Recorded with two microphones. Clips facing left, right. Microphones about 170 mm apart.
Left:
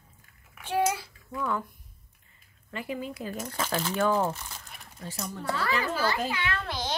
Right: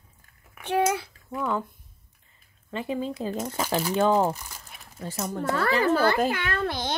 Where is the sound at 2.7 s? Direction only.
25° right (ahead or behind).